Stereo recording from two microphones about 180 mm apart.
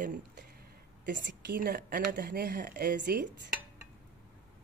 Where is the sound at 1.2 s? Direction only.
75° right (ahead or behind).